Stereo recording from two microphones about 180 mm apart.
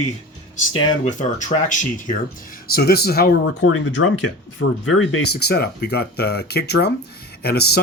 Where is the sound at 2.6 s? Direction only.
60° left (ahead or behind); by 4.7 s 90° left.